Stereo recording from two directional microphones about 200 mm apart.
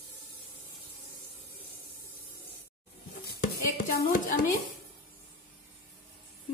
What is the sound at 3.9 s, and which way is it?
Speech, 45° left (ahead or behind).